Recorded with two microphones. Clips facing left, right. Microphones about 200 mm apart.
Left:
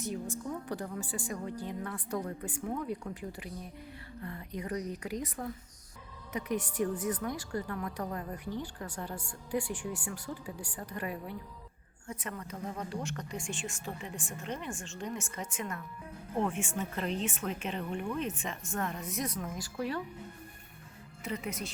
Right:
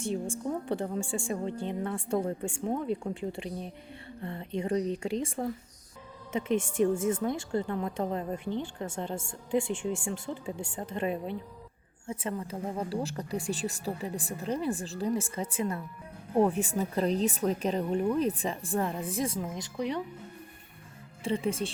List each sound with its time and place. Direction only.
0.0 s a woman's voice: 30° right (ahead or behind)
21.2 s speech: 30° right (ahead or behind)